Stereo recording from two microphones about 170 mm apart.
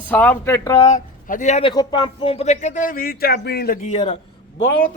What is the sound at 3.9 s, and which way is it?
Speech, 35° left (ahead or behind).